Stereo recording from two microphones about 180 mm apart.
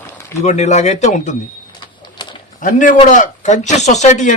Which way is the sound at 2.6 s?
45° left (ahead or behind).